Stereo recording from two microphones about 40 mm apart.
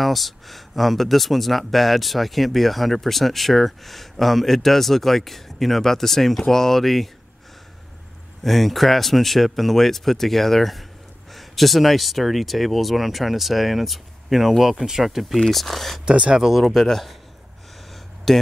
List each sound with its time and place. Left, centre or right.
0.0 s speech: centre
8.5 s speech: centre
16.1 s speech: right
16.8 s a man's voice: centre
18.3 s speech: centre